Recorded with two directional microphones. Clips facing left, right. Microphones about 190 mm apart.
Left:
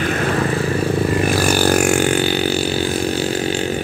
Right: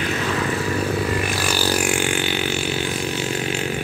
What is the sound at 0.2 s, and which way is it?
Vehicle, 50° left (ahead or behind).